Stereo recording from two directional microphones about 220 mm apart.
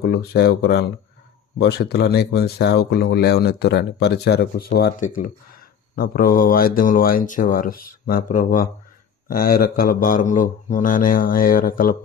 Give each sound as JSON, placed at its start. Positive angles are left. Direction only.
{"t": 0.0, "sound": "speech", "side_deg": 45}